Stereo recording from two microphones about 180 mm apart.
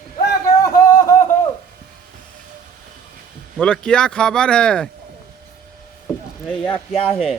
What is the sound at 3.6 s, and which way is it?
Speech, 5° left (ahead or behind).